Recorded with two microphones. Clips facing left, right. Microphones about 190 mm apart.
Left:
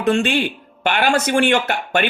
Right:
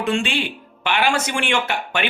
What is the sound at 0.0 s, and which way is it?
Speech, 45° left (ahead or behind).